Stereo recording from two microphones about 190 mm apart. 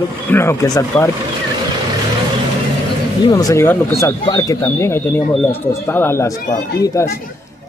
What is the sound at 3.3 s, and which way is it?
Speech, 20° left (ahead or behind).